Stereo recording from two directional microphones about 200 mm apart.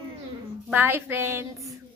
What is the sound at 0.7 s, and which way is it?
Child singing, 10° right (ahead or behind).